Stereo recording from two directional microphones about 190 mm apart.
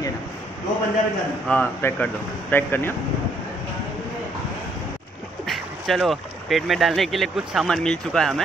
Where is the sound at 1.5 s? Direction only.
10° left (ahead or behind).